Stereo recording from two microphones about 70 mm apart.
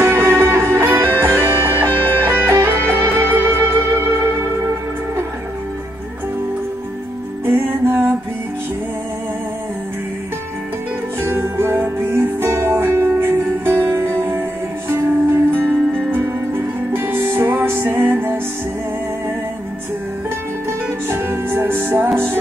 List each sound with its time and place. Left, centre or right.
0.0 s music: right
7.4 s music: right
11.1 s music: right
15.6 s music: centre
16.1 s music: right
21.1 s music: right